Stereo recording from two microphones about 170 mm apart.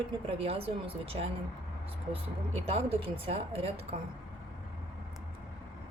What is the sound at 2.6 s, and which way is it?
A woman's voice, 35° right (ahead or behind).